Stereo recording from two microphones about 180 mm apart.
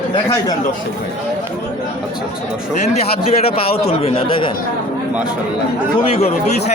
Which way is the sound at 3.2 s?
35° left (ahead or behind).